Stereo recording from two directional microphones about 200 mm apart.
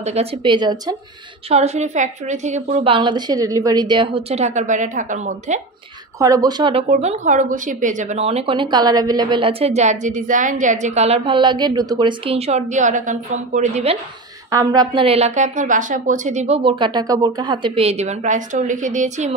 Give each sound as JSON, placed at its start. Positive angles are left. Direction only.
{"t": 0.0, "sound": "a woman's voice", "side_deg": -30}
{"t": 1.5, "sound": "a woman's voice", "side_deg": -35}
{"t": 6.1, "sound": "a woman's voice", "side_deg": -15}
{"t": 6.9, "sound": "a woman's voice", "side_deg": -35}
{"t": 14.5, "sound": "a woman's voice", "side_deg": -20}